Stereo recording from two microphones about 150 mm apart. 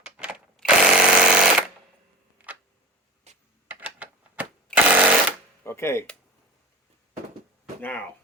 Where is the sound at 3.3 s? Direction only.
50° right (ahead or behind).